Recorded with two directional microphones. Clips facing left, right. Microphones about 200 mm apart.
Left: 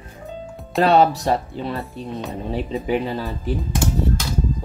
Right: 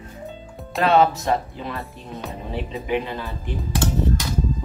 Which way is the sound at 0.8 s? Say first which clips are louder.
Left 2 dB; 35° left (ahead or behind).